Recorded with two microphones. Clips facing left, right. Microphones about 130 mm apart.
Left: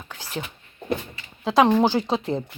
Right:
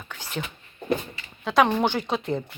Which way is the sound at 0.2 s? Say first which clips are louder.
Left 1 dB; 30° left (ahead or behind).